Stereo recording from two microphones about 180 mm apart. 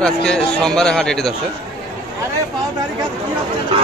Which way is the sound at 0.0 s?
5° left (ahead or behind).